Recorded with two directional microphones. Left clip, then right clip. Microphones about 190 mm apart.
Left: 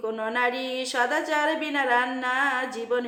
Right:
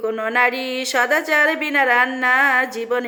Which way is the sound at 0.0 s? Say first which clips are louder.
Right 8 dB; 20° right (ahead or behind).